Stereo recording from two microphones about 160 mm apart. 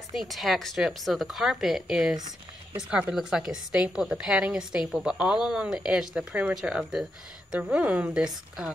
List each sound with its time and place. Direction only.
0.1 s a woman's voice: centre (ahead or behind)
2.1 s a sound: 25° right (ahead or behind)
2.9 s a woman's voice: 5° right (ahead or behind)